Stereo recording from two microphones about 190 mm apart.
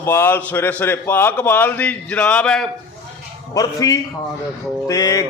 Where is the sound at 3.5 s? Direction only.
20° left (ahead or behind).